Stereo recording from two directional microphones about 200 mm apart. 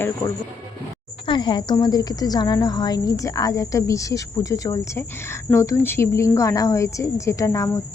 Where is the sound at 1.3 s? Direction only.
25° left (ahead or behind).